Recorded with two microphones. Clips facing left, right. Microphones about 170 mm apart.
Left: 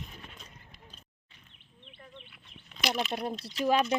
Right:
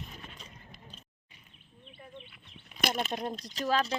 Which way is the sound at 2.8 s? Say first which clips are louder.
Even; 50° right (ahead or behind).